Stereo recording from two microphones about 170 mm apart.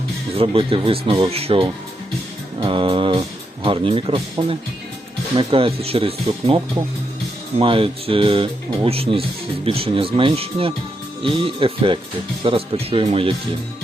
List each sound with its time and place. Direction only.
0.3 s speech: 35° right (ahead or behind)
7.6 s speech: 30° right (ahead or behind)